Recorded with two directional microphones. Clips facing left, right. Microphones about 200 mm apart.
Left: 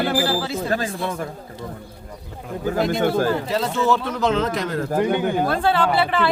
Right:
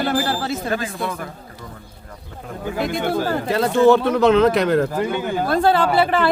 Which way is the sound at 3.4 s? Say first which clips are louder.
Right 6 dB; 55° right (ahead or behind).